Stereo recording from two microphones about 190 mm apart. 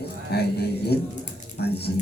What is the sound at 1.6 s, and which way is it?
Speech, 60° left (ahead or behind).